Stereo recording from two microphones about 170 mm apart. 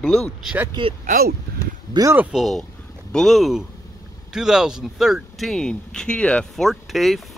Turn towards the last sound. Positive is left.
turn(degrees=0)  # may be behind; listen again after turning